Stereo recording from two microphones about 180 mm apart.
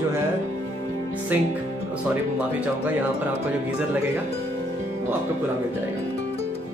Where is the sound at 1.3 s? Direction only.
10° right (ahead or behind).